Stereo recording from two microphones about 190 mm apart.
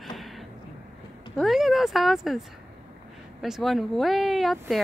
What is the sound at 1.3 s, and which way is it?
Speech, centre (ahead or behind).